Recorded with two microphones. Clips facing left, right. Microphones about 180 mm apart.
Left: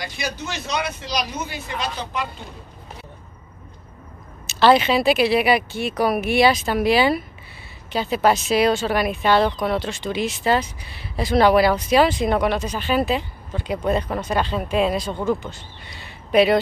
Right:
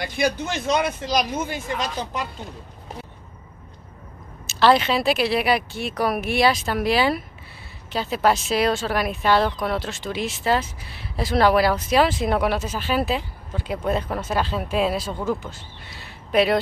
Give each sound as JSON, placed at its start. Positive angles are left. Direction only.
{"t": 0.0, "sound": "speech", "side_deg": -55}
{"t": 4.5, "sound": "speech", "side_deg": 0}